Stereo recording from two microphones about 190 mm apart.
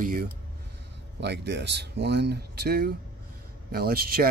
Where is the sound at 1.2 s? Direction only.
65° right (ahead or behind).